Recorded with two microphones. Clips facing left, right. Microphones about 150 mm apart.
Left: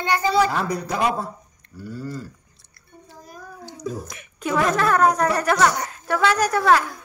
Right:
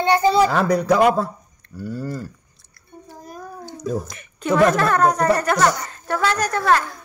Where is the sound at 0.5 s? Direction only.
80° right; by 2.2 s 60° right (ahead or behind).